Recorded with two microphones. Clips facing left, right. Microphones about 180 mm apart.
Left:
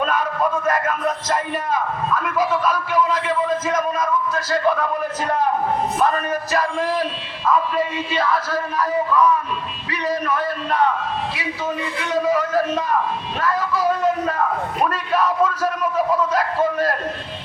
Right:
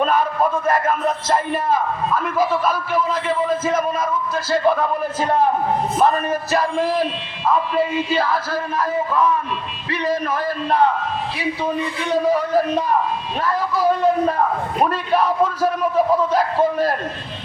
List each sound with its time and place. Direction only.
0.0 s speech: 30° right (ahead or behind)
6.0 s a man's voice: 30° right (ahead or behind)
12.1 s a man's voice: 30° right (ahead or behind)
13.4 s a sound: 30° right (ahead or behind)
16.3 s a man's voice: 30° right (ahead or behind)